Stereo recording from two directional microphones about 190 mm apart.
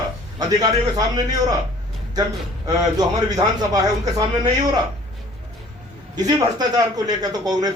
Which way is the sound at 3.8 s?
20° right (ahead or behind).